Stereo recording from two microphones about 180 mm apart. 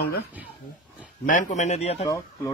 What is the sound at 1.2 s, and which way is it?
Speech, 45° left (ahead or behind).